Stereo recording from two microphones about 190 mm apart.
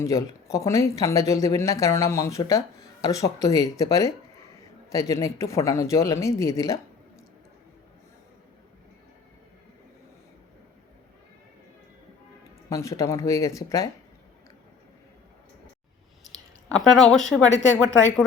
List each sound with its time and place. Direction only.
0.0 s speech: 15° left (ahead or behind)
12.7 s speech: 15° left (ahead or behind)
16.6 s speech: centre (ahead or behind)
17.8 s speech: 80° left